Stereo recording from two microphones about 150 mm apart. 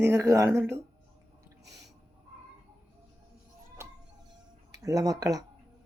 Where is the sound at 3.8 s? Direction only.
20° right (ahead or behind).